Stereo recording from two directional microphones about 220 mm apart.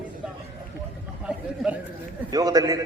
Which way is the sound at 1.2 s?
5° right (ahead or behind).